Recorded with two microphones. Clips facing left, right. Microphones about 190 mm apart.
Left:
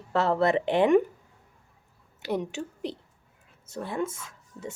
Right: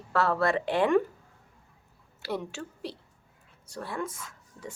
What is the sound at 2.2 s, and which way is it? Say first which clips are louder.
A woman's voice: left 4 dB; 20° left (ahead or behind).